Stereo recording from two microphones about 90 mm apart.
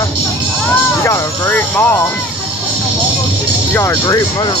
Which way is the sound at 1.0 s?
25° left (ahead or behind).